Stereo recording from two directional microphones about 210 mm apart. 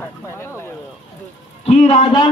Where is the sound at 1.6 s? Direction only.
30° left (ahead or behind).